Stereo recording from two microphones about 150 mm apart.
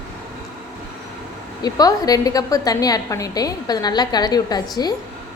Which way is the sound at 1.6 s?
25° left (ahead or behind).